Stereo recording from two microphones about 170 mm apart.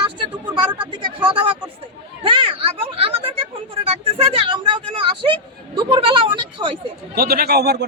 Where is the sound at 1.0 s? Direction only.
30° right (ahead or behind).